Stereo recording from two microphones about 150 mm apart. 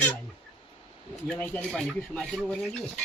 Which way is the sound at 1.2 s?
10° left (ahead or behind).